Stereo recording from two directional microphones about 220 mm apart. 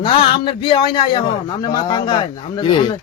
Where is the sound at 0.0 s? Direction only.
25° left (ahead or behind).